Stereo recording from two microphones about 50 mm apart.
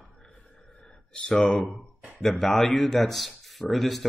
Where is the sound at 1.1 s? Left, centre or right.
Centre.